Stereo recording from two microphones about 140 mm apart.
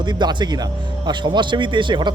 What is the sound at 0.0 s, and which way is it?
Speech, 30° right (ahead or behind).